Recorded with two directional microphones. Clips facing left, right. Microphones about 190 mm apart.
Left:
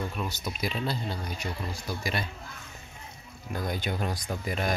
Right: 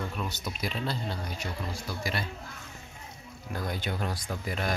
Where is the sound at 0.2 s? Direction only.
10° left (ahead or behind).